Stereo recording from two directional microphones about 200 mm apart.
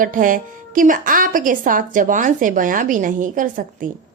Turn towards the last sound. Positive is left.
turn(degrees=-40)  # may be behind; listen again after turning